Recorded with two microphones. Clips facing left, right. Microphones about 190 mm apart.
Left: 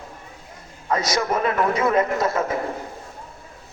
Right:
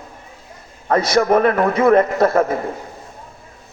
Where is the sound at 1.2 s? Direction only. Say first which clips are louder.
Right 10 dB; 55° right (ahead or behind).